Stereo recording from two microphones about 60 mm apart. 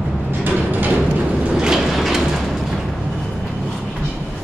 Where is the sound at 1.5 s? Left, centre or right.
Centre.